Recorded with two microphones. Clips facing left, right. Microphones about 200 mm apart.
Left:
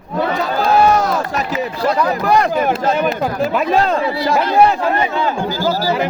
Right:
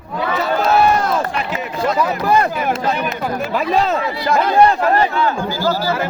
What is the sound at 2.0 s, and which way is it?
Speech, 5° right (ahead or behind).